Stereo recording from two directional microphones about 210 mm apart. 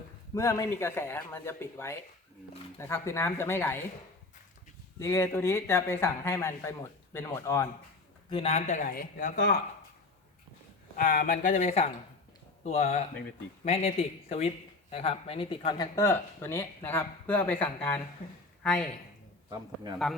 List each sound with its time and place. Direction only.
0.3 s speech: 15° left (ahead or behind)
4.9 s speech: 15° left (ahead or behind)
8.3 s speech: 30° left (ahead or behind); by 9.6 s 45° left (ahead or behind)
10.9 s speech: 45° left (ahead or behind); by 18.9 s 5° left (ahead or behind)
19.5 s a man's voice: 20° right (ahead or behind)